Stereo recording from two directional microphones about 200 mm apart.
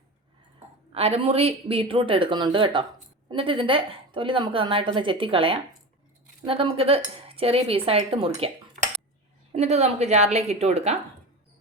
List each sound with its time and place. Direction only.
0.9 s a woman's voice: 30° right (ahead or behind)
9.5 s a woman's voice: 35° right (ahead or behind)